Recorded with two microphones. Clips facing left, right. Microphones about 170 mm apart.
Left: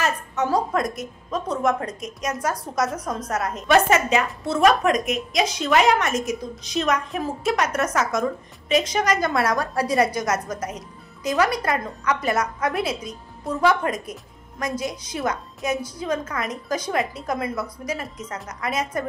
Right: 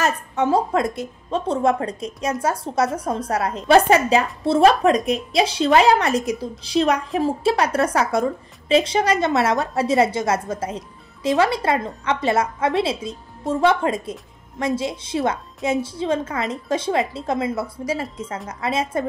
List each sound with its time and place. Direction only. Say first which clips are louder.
0.0 s a woman's voice: right 3 dB; 30° right (ahead or behind)